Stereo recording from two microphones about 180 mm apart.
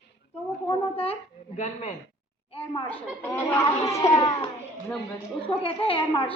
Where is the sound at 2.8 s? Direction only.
10° left (ahead or behind).